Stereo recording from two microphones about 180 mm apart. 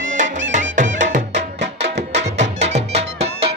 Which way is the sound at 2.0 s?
40° right (ahead or behind).